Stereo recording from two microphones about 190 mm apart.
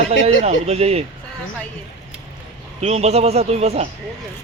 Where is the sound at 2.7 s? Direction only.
35° right (ahead or behind).